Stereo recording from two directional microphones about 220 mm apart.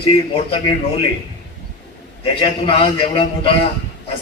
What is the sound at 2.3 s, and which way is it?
Speech, 25° left (ahead or behind).